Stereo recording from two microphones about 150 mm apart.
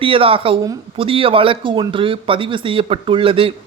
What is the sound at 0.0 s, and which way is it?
A man's voice, 35° right (ahead or behind).